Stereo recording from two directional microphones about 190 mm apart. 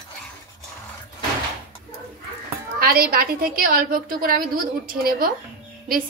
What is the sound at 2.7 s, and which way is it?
A woman's voice, 50° right (ahead or behind).